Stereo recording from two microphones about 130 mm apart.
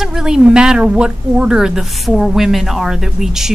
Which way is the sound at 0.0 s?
5° right (ahead or behind).